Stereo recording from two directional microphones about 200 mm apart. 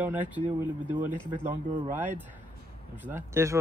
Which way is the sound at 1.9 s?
10° right (ahead or behind).